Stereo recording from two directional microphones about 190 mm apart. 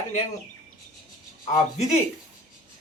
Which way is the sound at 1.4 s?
35° left (ahead or behind).